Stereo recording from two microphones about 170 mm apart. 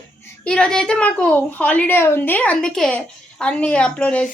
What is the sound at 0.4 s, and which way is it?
A woman's voice, 5° left (ahead or behind).